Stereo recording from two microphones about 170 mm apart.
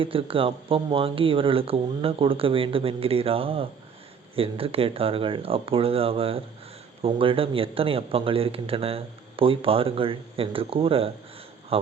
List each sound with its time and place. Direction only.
0.0 s speech: 30° right (ahead or behind)